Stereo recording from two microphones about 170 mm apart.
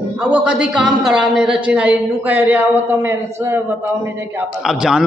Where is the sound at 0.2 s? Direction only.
5° right (ahead or behind).